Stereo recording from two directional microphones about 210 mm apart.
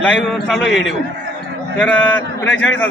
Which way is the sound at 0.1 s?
Centre (ahead or behind).